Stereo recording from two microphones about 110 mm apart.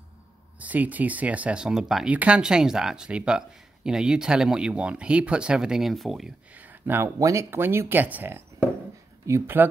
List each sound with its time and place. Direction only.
0.6 s speech: 15° right (ahead or behind)
6.5 s speech: 15° right (ahead or behind)
7.2 s speech: 30° right (ahead or behind)